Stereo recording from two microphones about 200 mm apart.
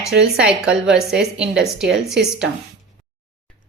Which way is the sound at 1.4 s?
60° right (ahead or behind).